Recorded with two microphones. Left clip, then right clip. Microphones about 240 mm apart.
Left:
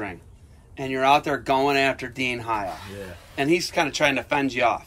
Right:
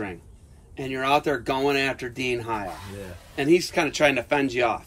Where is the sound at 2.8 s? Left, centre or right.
Centre.